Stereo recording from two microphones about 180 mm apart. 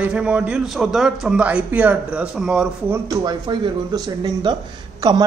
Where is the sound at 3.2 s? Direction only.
25° right (ahead or behind).